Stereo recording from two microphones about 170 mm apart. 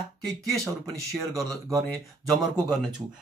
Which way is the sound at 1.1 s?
Centre (ahead or behind).